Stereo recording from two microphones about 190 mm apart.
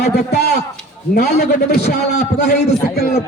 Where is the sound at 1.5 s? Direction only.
60° left (ahead or behind).